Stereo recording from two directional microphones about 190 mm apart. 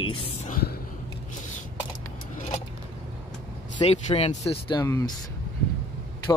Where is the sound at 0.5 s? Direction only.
55° left (ahead or behind).